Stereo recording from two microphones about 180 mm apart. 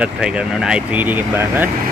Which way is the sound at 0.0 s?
5° right (ahead or behind).